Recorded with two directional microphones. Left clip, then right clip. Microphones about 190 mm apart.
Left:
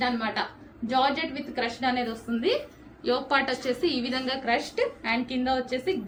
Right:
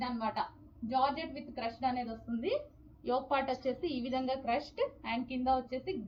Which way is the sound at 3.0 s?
25° left (ahead or behind).